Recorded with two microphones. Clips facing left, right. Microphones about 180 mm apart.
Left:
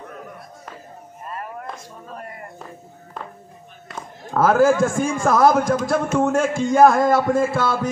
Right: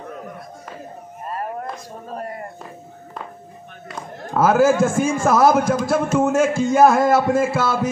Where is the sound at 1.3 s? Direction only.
40° right (ahead or behind).